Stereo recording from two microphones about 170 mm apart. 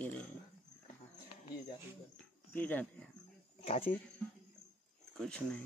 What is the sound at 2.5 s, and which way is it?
Speech, 10° left (ahead or behind).